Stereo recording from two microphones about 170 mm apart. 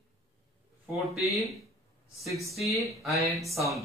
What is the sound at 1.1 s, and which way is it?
Speech, centre (ahead or behind).